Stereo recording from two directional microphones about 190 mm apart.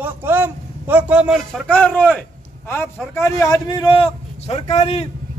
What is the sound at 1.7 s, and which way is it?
A man's voice, 5° left (ahead or behind).